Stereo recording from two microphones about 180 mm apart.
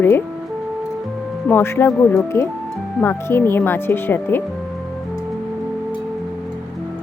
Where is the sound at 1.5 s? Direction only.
10° left (ahead or behind).